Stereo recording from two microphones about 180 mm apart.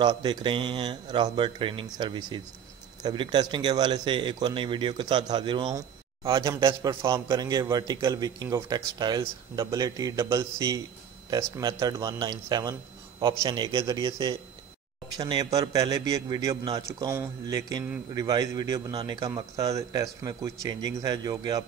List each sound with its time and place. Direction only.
0.0 s a man's voice: 25° right (ahead or behind)